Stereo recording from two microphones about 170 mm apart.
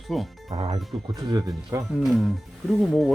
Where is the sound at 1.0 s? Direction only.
20° right (ahead or behind).